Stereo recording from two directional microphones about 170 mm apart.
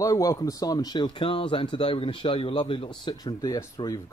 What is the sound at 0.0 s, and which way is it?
A man's voice, 20° left (ahead or behind).